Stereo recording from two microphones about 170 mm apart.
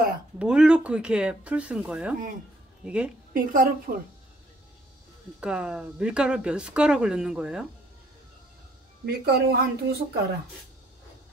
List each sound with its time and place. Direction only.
0.4 s a woman's voice: 5° right (ahead or behind)
3.3 s a woman's voice: 55° right (ahead or behind)
5.4 s speech: 5° right (ahead or behind)
9.0 s speech: 70° right (ahead or behind)